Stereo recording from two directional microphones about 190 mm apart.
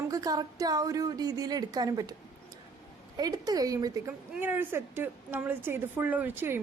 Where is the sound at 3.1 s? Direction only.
20° right (ahead or behind).